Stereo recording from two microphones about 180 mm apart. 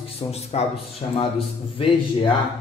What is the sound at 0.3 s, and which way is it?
Speech, 35° left (ahead or behind).